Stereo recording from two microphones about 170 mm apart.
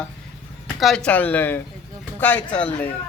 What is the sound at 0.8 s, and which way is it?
Speech, 5° left (ahead or behind).